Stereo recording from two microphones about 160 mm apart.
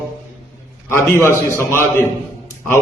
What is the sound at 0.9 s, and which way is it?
Speech, 15° left (ahead or behind).